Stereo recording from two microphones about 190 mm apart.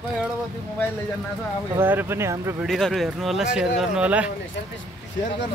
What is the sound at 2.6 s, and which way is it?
Speech, centre (ahead or behind).